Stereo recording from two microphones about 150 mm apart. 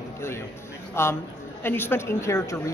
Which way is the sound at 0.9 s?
15° left (ahead or behind).